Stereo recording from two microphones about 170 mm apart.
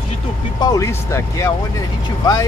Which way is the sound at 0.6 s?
20° left (ahead or behind).